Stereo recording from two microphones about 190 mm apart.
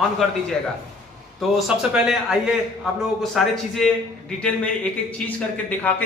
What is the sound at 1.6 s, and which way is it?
A man's voice, centre (ahead or behind).